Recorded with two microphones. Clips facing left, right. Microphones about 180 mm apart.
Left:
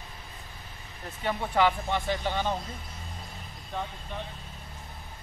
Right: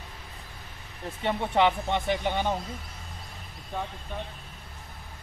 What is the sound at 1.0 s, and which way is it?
Speech, 25° right (ahead or behind).